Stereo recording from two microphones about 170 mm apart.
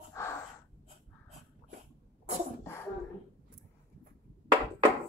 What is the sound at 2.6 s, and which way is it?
Cough, 15° left (ahead or behind).